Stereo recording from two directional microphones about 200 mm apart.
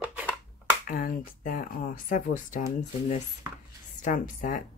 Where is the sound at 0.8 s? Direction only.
45° left (ahead or behind).